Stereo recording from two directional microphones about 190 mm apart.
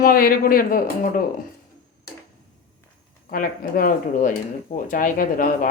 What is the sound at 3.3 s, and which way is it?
Speech, 45° left (ahead or behind).